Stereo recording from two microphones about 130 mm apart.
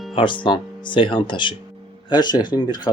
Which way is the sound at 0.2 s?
40° left (ahead or behind).